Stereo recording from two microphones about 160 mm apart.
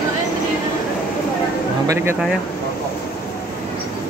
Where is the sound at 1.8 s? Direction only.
15° right (ahead or behind).